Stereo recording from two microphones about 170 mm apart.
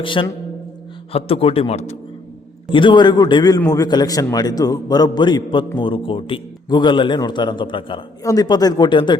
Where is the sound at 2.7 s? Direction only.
30° left (ahead or behind).